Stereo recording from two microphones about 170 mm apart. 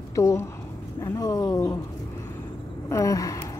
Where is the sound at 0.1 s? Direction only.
15° left (ahead or behind).